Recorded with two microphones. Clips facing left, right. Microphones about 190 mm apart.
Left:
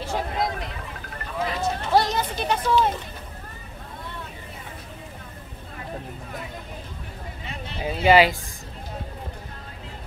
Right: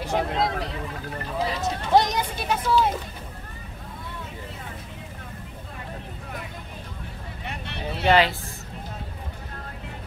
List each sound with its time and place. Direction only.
0.0 s speech: 20° right (ahead or behind)
2.4 s speech: 5° right (ahead or behind)
7.4 s a sound: 65° right (ahead or behind)
7.8 s speech: 10° left (ahead or behind)